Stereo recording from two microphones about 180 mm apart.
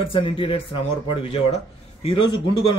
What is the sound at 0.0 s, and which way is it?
A man's voice, 30° left (ahead or behind).